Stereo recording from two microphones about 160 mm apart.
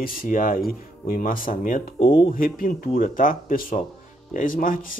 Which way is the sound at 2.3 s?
60° left (ahead or behind).